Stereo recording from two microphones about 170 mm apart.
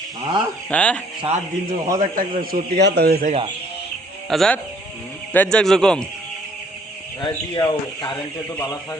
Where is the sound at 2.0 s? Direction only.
50° right (ahead or behind).